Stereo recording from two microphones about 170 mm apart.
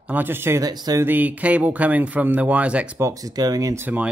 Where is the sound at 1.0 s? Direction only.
10° right (ahead or behind).